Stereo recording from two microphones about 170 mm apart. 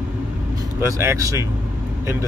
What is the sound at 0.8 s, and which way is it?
Speech, 15° right (ahead or behind).